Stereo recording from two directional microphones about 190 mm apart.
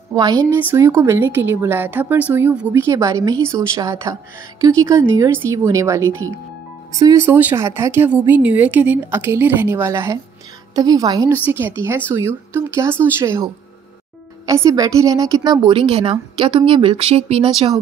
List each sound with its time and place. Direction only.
0.1 s a woman's voice: 20° right (ahead or behind)